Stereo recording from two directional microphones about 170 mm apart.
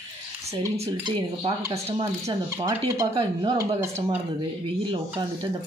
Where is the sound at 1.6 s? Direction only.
15° right (ahead or behind).